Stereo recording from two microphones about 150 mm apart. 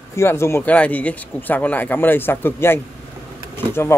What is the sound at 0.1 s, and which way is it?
Speech, 15° left (ahead or behind).